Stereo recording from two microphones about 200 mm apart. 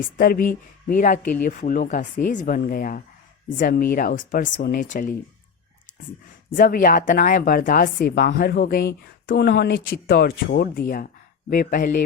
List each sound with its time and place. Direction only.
0.2 s a woman's voice: 45° left (ahead or behind)
6.5 s a woman's voice: 45° left (ahead or behind)